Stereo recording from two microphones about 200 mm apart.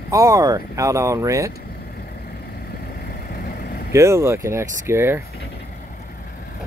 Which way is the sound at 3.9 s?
15° right (ahead or behind).